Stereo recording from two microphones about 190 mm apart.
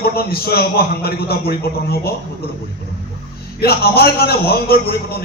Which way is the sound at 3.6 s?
55° left (ahead or behind).